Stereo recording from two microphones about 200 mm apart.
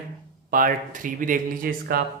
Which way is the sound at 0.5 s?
40° right (ahead or behind).